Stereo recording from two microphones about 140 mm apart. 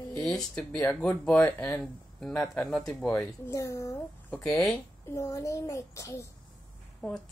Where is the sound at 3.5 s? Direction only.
25° left (ahead or behind).